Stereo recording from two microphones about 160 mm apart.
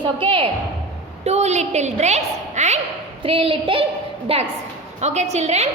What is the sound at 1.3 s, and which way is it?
A woman's voice, 45° right (ahead or behind).